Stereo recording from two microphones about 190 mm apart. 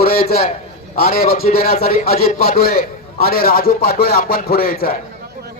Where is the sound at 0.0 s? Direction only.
55° left (ahead or behind).